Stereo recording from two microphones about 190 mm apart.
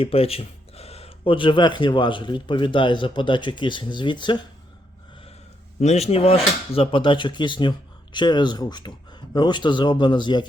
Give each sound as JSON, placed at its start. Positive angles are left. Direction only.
{"t": 0.0, "sound": "speech", "side_deg": 30}
{"t": 5.8, "sound": "speech", "side_deg": 35}